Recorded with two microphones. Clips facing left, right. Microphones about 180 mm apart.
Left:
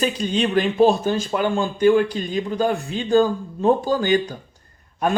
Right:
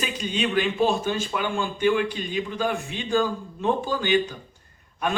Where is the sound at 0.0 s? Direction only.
35° left (ahead or behind).